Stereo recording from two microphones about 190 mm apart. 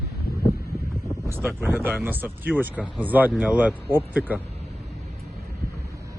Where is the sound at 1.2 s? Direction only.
10° right (ahead or behind).